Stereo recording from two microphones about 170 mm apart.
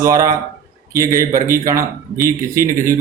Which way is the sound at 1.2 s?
60° right (ahead or behind).